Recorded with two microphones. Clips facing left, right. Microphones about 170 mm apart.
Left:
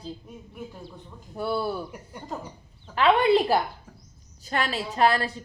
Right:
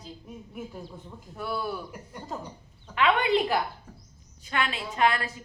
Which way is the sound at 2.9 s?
35° left (ahead or behind).